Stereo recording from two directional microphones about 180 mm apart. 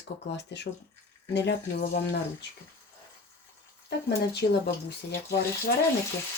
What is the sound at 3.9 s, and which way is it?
Speech, 65° left (ahead or behind).